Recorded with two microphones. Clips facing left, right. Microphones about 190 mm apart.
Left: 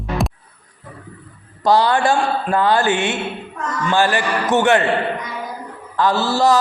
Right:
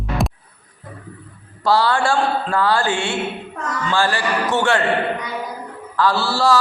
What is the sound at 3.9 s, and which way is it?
Speech, 20° left (ahead or behind).